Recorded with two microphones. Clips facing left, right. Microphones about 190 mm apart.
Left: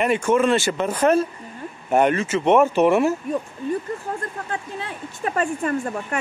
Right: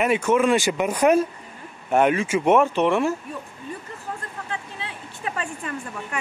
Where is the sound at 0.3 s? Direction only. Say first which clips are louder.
Left 1 dB; 10° right (ahead or behind).